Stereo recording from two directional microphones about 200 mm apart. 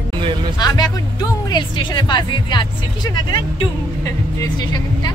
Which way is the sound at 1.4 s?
20° left (ahead or behind).